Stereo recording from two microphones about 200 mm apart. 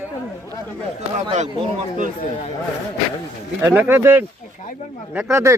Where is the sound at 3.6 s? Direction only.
10° right (ahead or behind).